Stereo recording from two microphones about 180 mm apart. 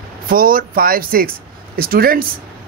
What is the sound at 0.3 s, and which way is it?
Speech, 50° right (ahead or behind).